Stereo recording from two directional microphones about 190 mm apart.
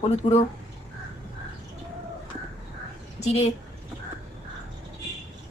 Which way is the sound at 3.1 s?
35° left (ahead or behind).